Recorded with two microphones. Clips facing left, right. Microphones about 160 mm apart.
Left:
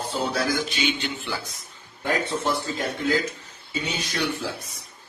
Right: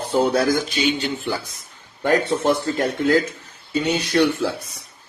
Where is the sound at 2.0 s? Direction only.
55° right (ahead or behind).